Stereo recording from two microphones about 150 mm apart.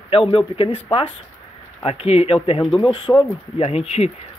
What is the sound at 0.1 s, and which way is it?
Speech, 40° left (ahead or behind).